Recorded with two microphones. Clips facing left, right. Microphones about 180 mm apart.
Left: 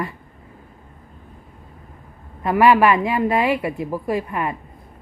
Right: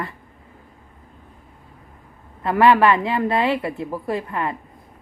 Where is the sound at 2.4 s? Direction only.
15° left (ahead or behind).